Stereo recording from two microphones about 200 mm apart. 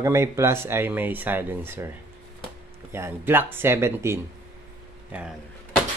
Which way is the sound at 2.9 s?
10° right (ahead or behind).